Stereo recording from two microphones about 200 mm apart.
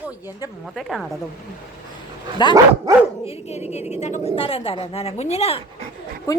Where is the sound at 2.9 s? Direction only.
15° right (ahead or behind).